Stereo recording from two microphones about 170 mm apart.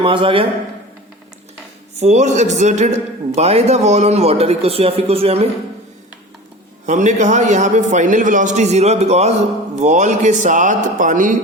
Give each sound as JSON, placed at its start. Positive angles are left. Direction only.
{"t": 0.0, "sound": "a man's voice", "side_deg": -30}
{"t": 2.0, "sound": "a man's voice", "side_deg": -40}
{"t": 6.8, "sound": "a man's voice", "side_deg": -45}